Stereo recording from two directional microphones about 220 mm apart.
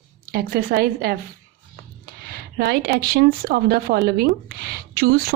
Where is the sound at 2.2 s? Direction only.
45° right (ahead or behind).